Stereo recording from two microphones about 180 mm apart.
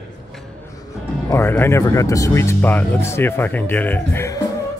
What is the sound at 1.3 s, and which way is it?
Speech, 15° left (ahead or behind).